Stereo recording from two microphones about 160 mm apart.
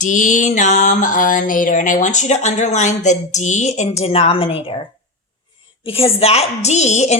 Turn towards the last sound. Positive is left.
turn(degrees=45)  # may be behind; listen again after turning